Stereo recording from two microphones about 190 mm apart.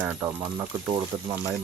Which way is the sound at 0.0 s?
10° right (ahead or behind).